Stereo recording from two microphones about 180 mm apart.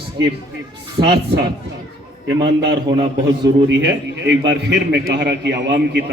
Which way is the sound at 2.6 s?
25° right (ahead or behind).